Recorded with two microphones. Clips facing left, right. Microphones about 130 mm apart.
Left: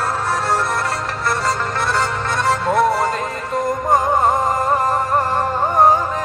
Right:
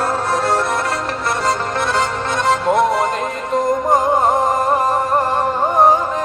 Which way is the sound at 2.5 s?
20° right (ahead or behind).